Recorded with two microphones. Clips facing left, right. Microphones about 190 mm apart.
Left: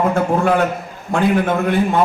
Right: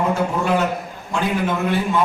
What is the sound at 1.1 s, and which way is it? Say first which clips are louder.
Speech: left 5 dB; 55° left (ahead or behind).